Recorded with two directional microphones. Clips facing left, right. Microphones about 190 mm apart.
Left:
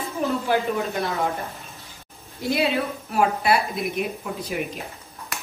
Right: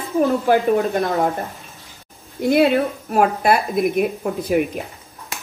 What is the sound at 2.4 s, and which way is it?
A woman's voice, 55° right (ahead or behind).